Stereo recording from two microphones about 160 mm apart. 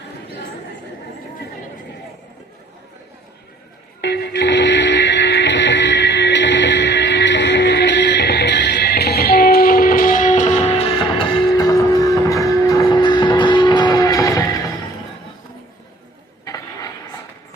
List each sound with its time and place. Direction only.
4.0 s music: 90° left; by 14.6 s 20° left (ahead or behind)